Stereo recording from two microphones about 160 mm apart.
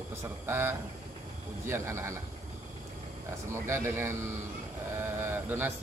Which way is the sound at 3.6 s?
15° right (ahead or behind).